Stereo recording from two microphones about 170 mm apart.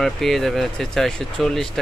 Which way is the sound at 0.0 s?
Centre (ahead or behind).